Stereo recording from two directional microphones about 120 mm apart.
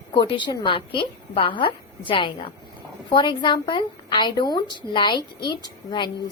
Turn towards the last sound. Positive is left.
turn(degrees=35)  # may be behind; listen again after turning